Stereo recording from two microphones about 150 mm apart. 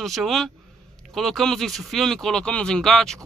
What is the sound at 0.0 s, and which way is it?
Speech, centre (ahead or behind).